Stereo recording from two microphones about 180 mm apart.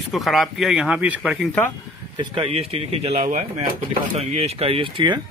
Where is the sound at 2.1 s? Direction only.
25° right (ahead or behind).